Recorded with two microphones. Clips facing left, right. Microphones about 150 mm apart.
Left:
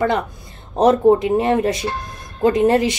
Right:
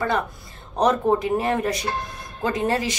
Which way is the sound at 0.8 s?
25° left (ahead or behind).